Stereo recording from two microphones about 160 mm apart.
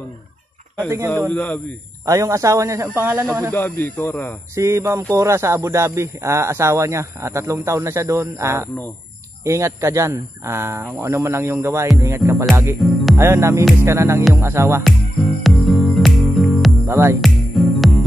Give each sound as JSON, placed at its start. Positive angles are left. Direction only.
{"t": 0.8, "sound": "speech", "side_deg": -15}
{"t": 1.3, "sound": "speech", "side_deg": 10}
{"t": 2.0, "sound": "speech", "side_deg": -20}
{"t": 3.5, "sound": "speech", "side_deg": 10}
{"t": 4.6, "sound": "speech", "side_deg": -20}
{"t": 12.2, "sound": "music", "side_deg": 0}
{"t": 13.2, "sound": "speech", "side_deg": -15}
{"t": 14.8, "sound": "music", "side_deg": 0}
{"t": 16.8, "sound": "speech", "side_deg": -15}
{"t": 17.2, "sound": "music", "side_deg": 0}